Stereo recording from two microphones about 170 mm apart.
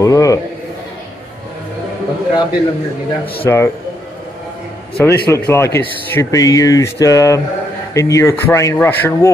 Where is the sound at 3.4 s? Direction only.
15° left (ahead or behind).